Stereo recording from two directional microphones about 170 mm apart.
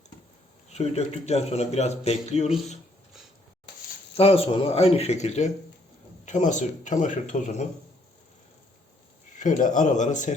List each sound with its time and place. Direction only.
0.7 s a man's voice: 40° left (ahead or behind)
4.2 s a man's voice: 35° left (ahead or behind)
9.4 s speech: 50° left (ahead or behind)